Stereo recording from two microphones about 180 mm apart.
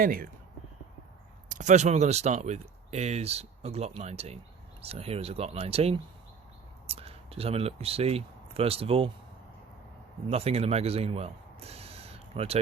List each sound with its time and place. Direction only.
0.0 s speech: 50° right (ahead or behind)
1.5 s speech: 45° right (ahead or behind)
10.2 s speech: 35° right (ahead or behind)